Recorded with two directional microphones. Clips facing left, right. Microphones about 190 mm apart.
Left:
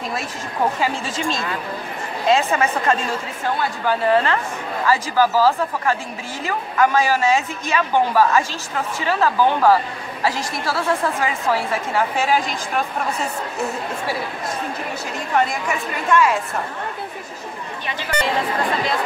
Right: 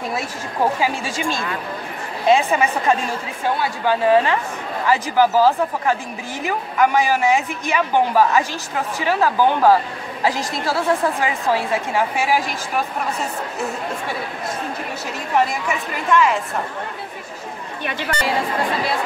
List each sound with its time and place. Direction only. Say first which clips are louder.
0.7 s a man's voice: right 1 dB; 10° right (ahead or behind)
2.2 s a man's voice: right 2 dB; 15° right (ahead or behind)
16.1 s a woman's voice: even; centre (ahead or behind)